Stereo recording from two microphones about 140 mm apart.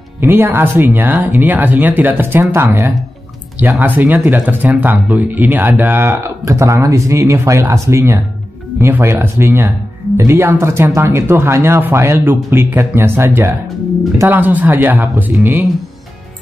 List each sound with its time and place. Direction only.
0.2 s speech: 15° right (ahead or behind)